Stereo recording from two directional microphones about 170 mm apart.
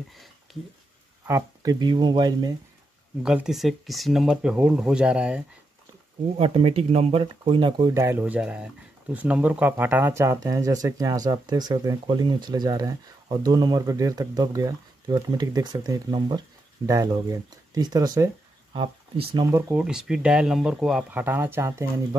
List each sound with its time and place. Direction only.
1.2 s speech: 20° right (ahead or behind)
3.2 s speech: 5° right (ahead or behind)
6.3 s speech: 35° right (ahead or behind)
7.9 s speech: 15° right (ahead or behind)
19.7 s speech: 5° right (ahead or behind)